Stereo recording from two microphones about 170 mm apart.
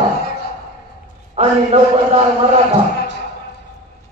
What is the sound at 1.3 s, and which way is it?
Speech, 40° right (ahead or behind).